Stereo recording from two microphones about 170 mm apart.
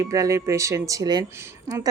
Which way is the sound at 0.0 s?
20° right (ahead or behind).